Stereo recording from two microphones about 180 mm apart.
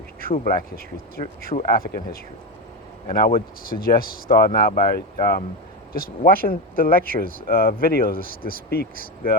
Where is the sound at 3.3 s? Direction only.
55° left (ahead or behind).